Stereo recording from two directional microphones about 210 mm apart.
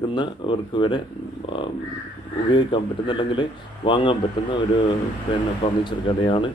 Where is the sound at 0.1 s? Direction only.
20° left (ahead or behind).